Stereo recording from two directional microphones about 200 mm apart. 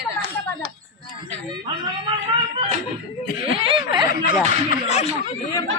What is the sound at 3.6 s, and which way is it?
Speech, 25° right (ahead or behind).